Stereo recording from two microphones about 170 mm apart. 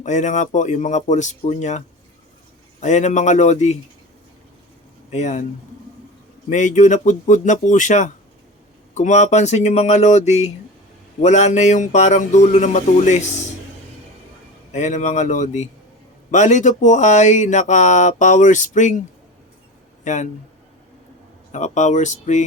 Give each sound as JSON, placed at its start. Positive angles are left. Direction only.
{"t": 0.0, "sound": "speech", "side_deg": 45}
{"t": 2.8, "sound": "speech", "side_deg": 45}
{"t": 5.1, "sound": "speech", "side_deg": 45}
{"t": 6.5, "sound": "speech", "side_deg": 45}
{"t": 14.7, "sound": "speech", "side_deg": 45}
{"t": 20.1, "sound": "speech", "side_deg": 45}
{"t": 21.5, "sound": "speech", "side_deg": 45}